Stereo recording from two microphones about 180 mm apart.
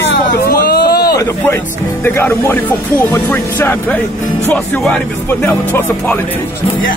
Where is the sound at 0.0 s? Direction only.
65° left (ahead or behind).